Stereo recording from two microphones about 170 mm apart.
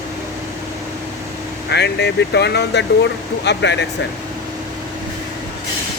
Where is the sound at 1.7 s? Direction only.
85° left.